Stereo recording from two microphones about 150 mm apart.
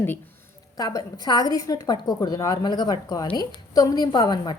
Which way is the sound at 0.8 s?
25° left (ahead or behind).